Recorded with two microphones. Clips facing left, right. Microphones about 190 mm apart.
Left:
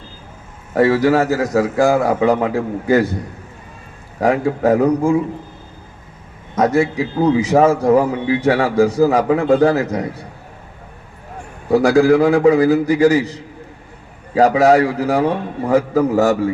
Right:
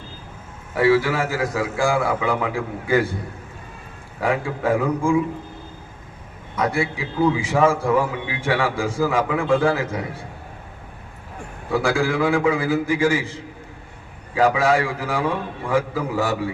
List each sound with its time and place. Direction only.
0.7 s a man's voice: 45° left (ahead or behind)
4.2 s a man's voice: 40° left (ahead or behind)
6.6 s a man's voice: 40° left (ahead or behind)
11.7 s a man's voice: 40° left (ahead or behind)